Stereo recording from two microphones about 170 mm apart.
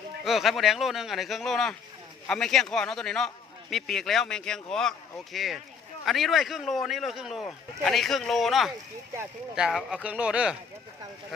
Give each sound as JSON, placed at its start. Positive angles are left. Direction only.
{"t": 0.3, "sound": "a man's voice", "side_deg": 0}